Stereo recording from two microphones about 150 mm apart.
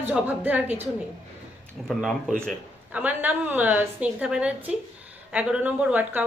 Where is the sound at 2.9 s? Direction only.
10° right (ahead or behind).